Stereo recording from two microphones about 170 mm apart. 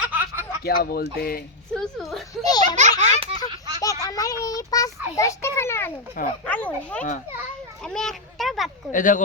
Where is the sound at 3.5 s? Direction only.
20° right (ahead or behind).